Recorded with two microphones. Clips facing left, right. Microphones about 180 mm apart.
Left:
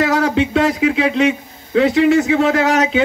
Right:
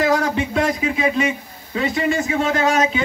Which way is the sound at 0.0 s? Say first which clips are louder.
Left 3 dB; 75° left (ahead or behind).